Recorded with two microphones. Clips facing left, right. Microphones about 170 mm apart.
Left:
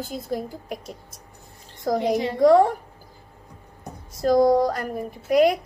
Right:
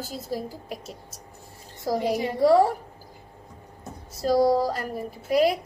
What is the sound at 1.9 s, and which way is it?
Speech, 5° right (ahead or behind).